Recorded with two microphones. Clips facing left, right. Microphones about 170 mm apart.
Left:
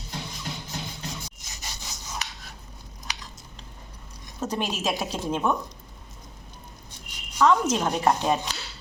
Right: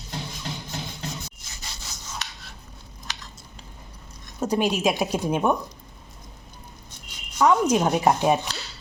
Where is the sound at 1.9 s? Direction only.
15° left (ahead or behind).